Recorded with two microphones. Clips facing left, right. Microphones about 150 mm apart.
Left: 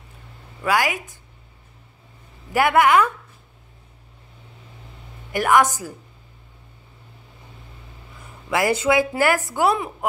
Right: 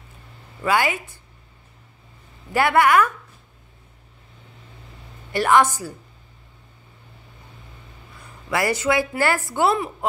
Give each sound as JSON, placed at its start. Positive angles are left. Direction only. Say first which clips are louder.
{"t": 0.6, "sound": "a woman's voice", "louder": "even", "side_deg": 10}
{"t": 2.5, "sound": "speech", "louder": "left 1 dB", "side_deg": 15}
{"t": 5.3, "sound": "a woman's voice", "louder": "even", "side_deg": 15}
{"t": 8.5, "sound": "speech", "louder": "left 2 dB", "side_deg": 15}